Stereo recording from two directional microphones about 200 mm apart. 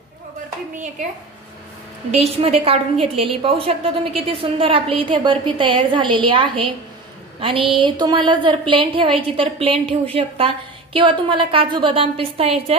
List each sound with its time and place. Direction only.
2.0 s a woman's voice: 30° right (ahead or behind)